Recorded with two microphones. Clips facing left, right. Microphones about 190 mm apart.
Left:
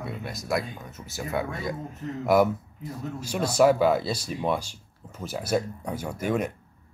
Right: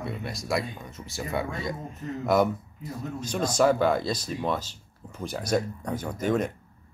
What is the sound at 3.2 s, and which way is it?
Speech, 10° left (ahead or behind).